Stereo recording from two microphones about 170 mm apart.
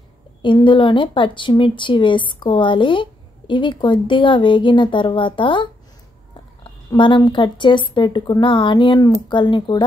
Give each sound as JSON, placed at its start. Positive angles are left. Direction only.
{"t": 0.4, "sound": "speech", "side_deg": 30}